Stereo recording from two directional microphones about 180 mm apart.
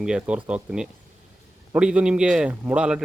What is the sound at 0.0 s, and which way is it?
A man's voice, 5° right (ahead or behind).